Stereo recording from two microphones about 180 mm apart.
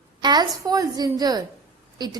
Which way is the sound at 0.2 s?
25° right (ahead or behind).